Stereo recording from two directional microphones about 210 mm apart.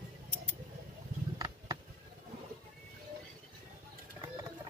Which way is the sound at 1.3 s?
15° right (ahead or behind).